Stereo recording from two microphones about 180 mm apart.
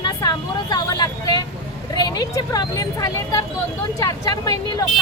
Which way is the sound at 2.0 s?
20° left (ahead or behind).